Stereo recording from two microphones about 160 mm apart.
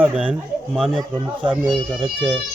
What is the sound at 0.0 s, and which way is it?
Speech, 10° right (ahead or behind).